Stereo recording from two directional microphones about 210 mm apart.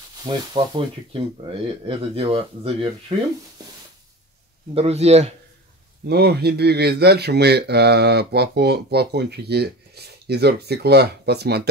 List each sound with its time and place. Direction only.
0.2 s speech: 20° right (ahead or behind)
4.7 s speech: 30° right (ahead or behind)
6.0 s speech: 50° right (ahead or behind)